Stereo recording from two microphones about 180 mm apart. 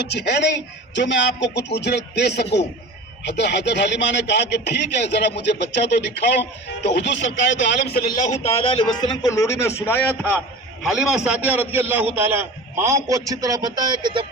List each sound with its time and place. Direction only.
0.1 s a man's voice: 70° left (ahead or behind)
8.2 s a man's voice: 35° left (ahead or behind); by 10.4 s 10° left (ahead or behind)
10.8 s a man's voice: 5° right (ahead or behind); by 14.3 s 25° right (ahead or behind)